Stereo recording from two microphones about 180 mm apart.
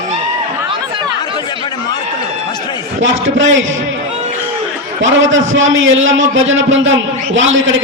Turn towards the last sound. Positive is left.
turn(degrees=-90)